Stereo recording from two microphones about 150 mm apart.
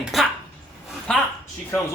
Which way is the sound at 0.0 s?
Centre (ahead or behind).